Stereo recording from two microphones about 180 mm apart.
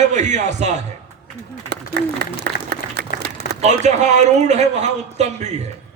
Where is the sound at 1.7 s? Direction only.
65° right (ahead or behind).